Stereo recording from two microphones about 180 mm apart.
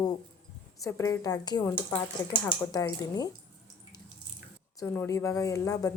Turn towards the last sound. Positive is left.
turn(degrees=20)  # may be behind; listen again after turning